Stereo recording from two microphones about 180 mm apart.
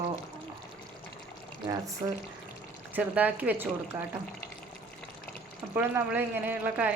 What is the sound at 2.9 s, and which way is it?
Speech, 10° right (ahead or behind).